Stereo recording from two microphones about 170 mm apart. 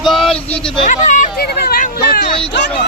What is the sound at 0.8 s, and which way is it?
Speech, 50° left (ahead or behind).